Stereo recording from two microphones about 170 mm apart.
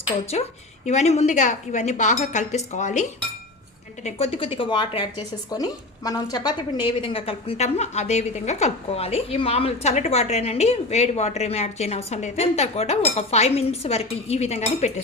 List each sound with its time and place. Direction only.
0.9 s a woman's voice: 40° left (ahead or behind)
4.0 s a woman's voice: 35° left (ahead or behind)